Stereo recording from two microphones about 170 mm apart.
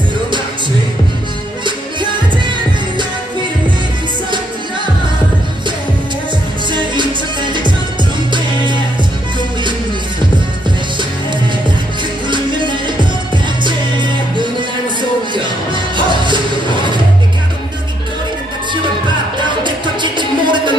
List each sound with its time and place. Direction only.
2.0 s music: 30° right (ahead or behind)
12.3 s music: 30° right (ahead or behind)
19.4 s music: 25° right (ahead or behind)